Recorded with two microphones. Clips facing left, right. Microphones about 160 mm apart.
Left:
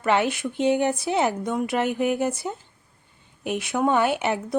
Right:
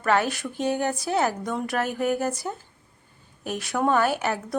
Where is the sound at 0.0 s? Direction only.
20° left (ahead or behind).